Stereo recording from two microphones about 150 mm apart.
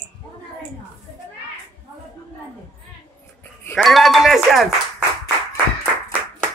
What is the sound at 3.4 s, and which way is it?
Music, 15° left (ahead or behind).